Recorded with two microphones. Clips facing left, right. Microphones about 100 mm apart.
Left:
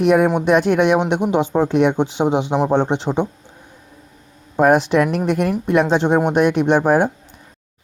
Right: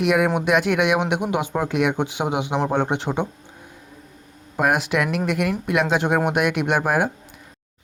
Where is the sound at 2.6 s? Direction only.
15° left (ahead or behind).